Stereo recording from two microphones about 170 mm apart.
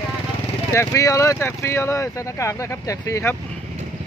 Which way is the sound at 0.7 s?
15° left (ahead or behind).